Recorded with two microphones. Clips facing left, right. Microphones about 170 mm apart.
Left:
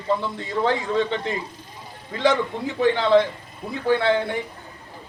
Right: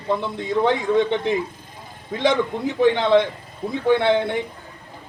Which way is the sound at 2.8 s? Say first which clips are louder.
Right 1 dB; 20° right (ahead or behind).